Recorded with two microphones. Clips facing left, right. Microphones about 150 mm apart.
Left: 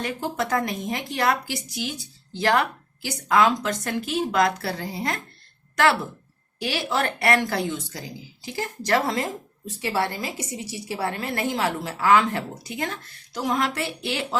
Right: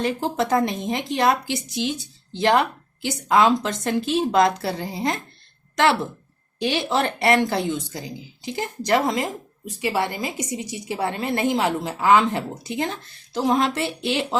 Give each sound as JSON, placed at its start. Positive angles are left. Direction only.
{"t": 0.0, "sound": "a woman's voice", "side_deg": -25}